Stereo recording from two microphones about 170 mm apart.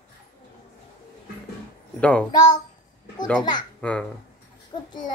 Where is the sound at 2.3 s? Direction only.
25° left (ahead or behind).